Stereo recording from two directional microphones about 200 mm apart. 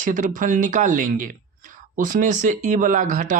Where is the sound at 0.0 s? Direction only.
40° right (ahead or behind).